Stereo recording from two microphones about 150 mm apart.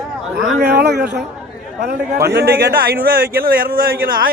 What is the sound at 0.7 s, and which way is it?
A man's voice, 90° right.